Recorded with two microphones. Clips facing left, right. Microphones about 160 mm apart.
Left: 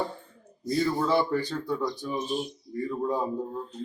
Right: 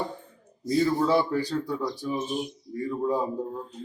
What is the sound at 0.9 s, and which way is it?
A man's voice, 10° right (ahead or behind).